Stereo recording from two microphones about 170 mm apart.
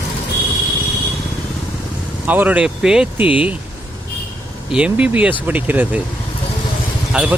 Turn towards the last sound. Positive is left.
turn(degrees=-5)  # may be behind; listen again after turning